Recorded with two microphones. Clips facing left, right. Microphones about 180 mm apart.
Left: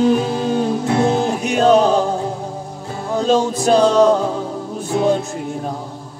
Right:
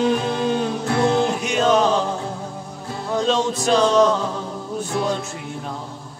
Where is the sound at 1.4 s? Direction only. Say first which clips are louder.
Left 5 dB; 40° left (ahead or behind).